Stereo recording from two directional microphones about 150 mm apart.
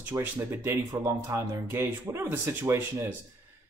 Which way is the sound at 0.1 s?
15° right (ahead or behind).